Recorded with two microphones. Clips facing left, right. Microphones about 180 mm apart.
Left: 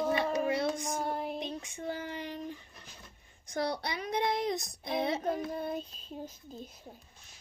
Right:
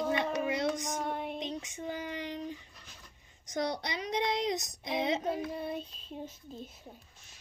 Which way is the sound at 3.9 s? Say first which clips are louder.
Left 1 dB; 55° left (ahead or behind).